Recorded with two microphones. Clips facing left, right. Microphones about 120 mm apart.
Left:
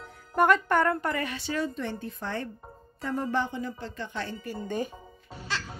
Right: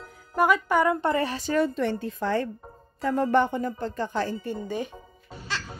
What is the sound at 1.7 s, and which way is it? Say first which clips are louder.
Speech: right 7 dB; 90° right.